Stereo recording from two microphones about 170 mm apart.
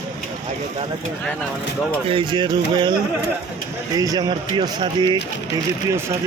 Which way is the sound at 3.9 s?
20° right (ahead or behind).